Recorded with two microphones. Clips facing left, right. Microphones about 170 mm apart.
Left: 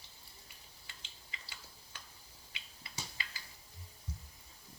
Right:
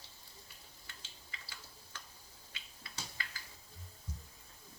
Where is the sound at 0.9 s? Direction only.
15° left (ahead or behind).